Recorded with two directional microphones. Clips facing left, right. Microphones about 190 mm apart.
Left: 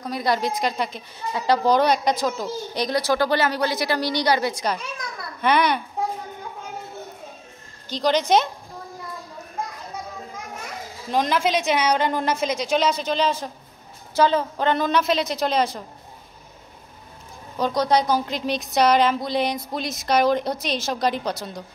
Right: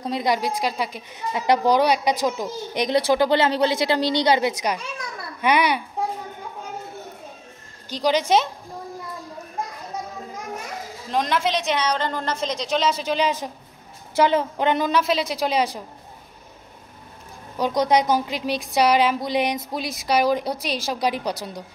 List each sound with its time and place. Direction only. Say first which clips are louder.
0.0 s a woman's voice: right 1 dB; 20° right (ahead or behind)
0.4 s a woman's voice: even; 5° right (ahead or behind)
7.9 s a woman's voice: even; 10° right (ahead or behind)
11.1 s a woman's voice: left 1 dB; centre (ahead or behind); by 14.9 s 15° right (ahead or behind)
14.9 s a woman's voice: even; 5° right (ahead or behind)
17.6 s a woman's voice: right 1 dB; 15° right (ahead or behind)